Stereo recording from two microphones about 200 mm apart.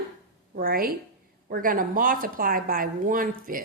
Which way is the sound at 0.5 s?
45° right (ahead or behind).